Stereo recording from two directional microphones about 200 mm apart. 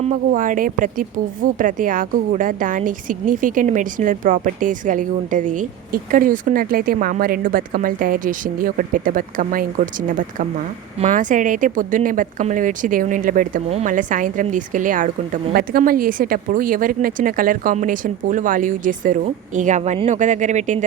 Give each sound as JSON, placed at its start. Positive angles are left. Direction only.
{"t": 0.0, "sound": "a woman's voice", "side_deg": -40}